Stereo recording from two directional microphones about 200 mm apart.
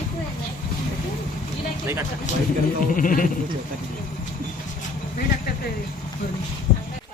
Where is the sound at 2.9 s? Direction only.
45° left (ahead or behind).